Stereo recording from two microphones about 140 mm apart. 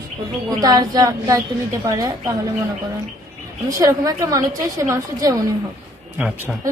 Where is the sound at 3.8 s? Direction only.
25° right (ahead or behind).